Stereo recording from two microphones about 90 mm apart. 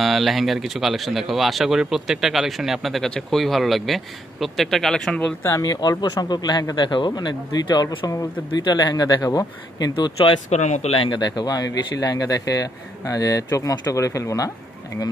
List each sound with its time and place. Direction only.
0.0 s speech: centre (ahead or behind)
5.6 s speech: 50° left (ahead or behind)
6.7 s speech: 60° left (ahead or behind)
7.2 s speech: 50° left (ahead or behind)
9.9 s speech: 60° left (ahead or behind)
10.9 s speech: 90° left
11.1 s speech: 50° left (ahead or behind)